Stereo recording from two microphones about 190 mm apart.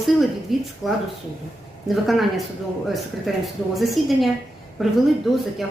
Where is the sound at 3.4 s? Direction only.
Centre (ahead or behind).